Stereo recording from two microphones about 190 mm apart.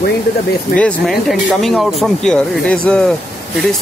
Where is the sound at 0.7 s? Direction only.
5° left (ahead or behind).